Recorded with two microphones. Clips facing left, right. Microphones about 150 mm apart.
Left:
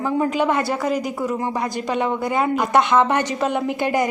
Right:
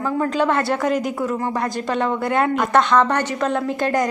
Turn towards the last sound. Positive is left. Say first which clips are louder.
# even
turn(degrees=5)  # may be behind; listen again after turning